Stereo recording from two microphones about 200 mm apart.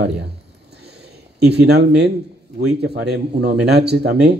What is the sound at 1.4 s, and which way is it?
A man's voice, 55° right (ahead or behind).